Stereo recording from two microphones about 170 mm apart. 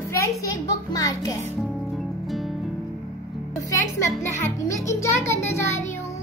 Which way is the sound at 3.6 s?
20° left (ahead or behind).